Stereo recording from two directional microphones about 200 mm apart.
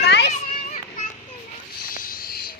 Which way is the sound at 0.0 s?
55° left (ahead or behind).